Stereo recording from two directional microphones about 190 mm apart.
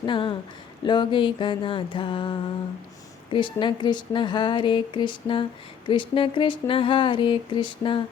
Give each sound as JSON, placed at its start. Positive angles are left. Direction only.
{"t": 0.0, "sound": "speech", "side_deg": 25}